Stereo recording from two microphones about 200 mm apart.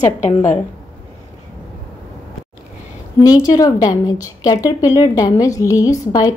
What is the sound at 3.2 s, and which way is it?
A woman's voice, 20° left (ahead or behind).